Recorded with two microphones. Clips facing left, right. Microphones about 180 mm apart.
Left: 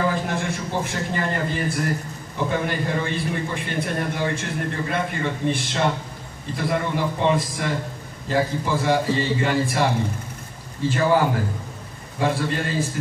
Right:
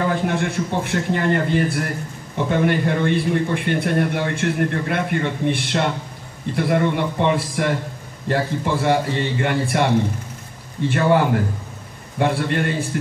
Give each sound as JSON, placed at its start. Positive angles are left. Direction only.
{"t": 0.1, "sound": "a man's voice", "side_deg": -65}